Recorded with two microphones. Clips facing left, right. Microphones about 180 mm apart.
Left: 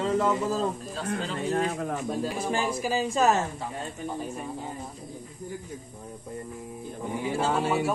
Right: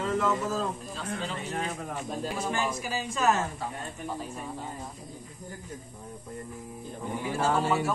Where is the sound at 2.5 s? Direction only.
30° left (ahead or behind).